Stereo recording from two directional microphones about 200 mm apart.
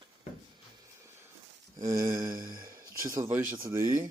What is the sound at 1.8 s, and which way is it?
Speech, 20° right (ahead or behind).